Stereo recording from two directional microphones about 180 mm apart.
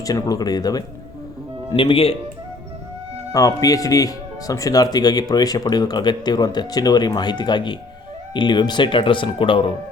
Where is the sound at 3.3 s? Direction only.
20° left (ahead or behind).